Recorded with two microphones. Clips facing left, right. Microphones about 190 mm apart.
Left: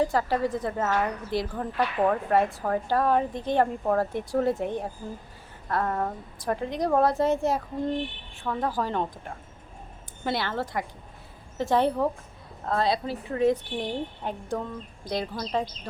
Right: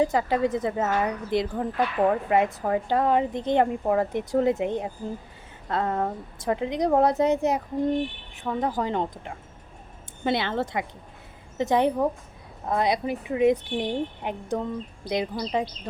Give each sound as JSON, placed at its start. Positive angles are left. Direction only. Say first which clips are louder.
{"t": 0.0, "sound": "a woman's voice", "louder": "right 2 dB", "side_deg": -20}